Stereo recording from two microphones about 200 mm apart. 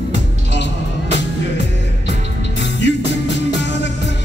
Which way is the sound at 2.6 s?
60° left (ahead or behind).